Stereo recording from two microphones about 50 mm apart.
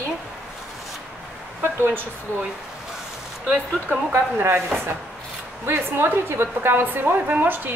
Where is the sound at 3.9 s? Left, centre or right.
Right.